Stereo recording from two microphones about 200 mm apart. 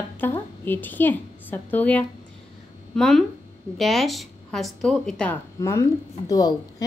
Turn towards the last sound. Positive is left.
turn(degrees=20)  # may be behind; listen again after turning